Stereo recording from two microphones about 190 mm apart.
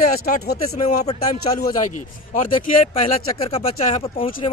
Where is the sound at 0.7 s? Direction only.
35° left (ahead or behind).